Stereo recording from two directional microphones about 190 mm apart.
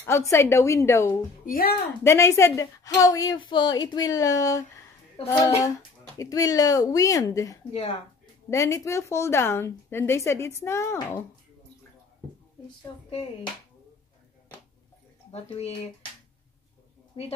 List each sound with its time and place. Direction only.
0.0 s a woman's voice: 15° left (ahead or behind)
1.4 s speech: 50° left (ahead or behind)
2.0 s a woman's voice: 15° left (ahead or behind)
12.9 s a woman's voice: 25° left (ahead or behind)
15.4 s speech: 30° left (ahead or behind)
17.1 s a woman's voice: 30° left (ahead or behind)